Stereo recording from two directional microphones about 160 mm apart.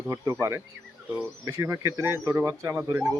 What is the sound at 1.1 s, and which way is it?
Speech, 15° right (ahead or behind).